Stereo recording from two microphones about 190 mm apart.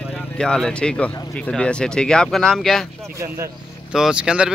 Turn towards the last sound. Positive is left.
turn(degrees=-5)  # may be behind; listen again after turning